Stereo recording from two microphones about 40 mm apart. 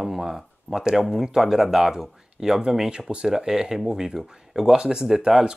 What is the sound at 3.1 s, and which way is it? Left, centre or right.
Speech, right.